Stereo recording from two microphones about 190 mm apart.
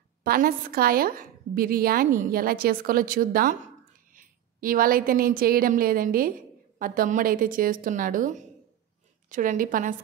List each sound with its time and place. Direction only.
0.2 s a woman's voice: 50° right (ahead or behind)